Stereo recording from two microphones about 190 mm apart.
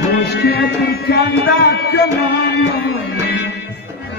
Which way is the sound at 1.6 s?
60° left (ahead or behind).